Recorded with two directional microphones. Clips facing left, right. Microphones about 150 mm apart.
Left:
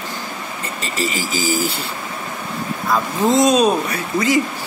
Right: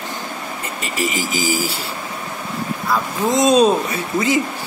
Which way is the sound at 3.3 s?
25° right (ahead or behind).